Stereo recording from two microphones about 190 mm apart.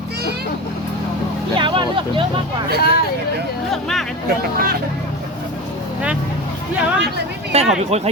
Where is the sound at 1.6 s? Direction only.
25° right (ahead or behind).